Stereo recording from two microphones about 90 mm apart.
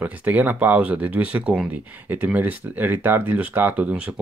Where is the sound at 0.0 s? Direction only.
20° right (ahead or behind).